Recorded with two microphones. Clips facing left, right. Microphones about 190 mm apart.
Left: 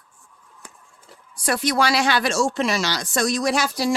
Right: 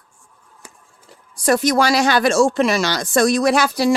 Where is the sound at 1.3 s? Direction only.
40° right (ahead or behind); by 3.9 s 60° right (ahead or behind).